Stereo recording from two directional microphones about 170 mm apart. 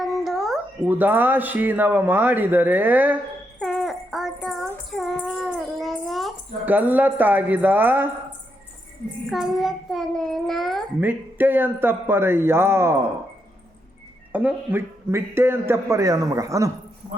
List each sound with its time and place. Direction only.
0.0 s a sound: centre (ahead or behind)
0.9 s a man's voice: 10° right (ahead or behind)
3.6 s wind chime: centre (ahead or behind)
4.9 s child singing: centre (ahead or behind)
6.7 s a man's voice: 10° right (ahead or behind)
9.3 s a child's voice: centre (ahead or behind)
11.0 s a man's voice: 10° right (ahead or behind)
14.3 s a man's voice: 10° right (ahead or behind)